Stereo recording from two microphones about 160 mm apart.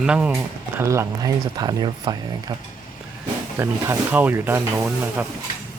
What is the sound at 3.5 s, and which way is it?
Speech, 15° right (ahead or behind).